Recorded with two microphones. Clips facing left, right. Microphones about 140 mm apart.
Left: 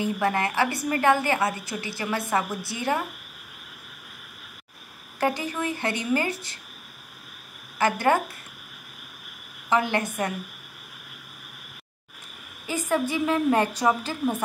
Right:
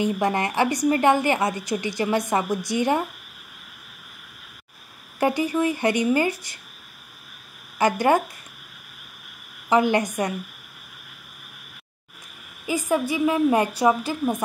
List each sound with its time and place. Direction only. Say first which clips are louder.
0.0 s a woman's voice: right 2 dB; 20° right (ahead or behind)
5.2 s a woman's voice: right 5 dB; 15° right (ahead or behind)
7.8 s a woman's voice: right 3 dB; 15° right (ahead or behind)
9.7 s a woman's voice: right 5 dB; 15° right (ahead or behind)
12.6 s a woman's voice: right 2 dB; 10° right (ahead or behind)